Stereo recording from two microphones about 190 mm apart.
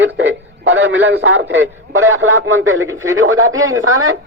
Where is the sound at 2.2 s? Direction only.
90° right.